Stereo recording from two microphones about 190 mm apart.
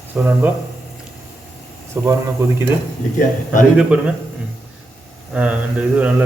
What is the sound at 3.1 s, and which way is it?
Speech, 45° left (ahead or behind).